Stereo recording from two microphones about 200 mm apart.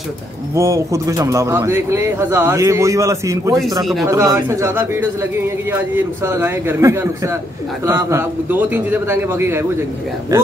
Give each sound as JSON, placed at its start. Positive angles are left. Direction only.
{"t": 0.6, "sound": "speech", "side_deg": -15}
{"t": 3.8, "sound": "speech", "side_deg": 0}
{"t": 4.1, "sound": "speech", "side_deg": -15}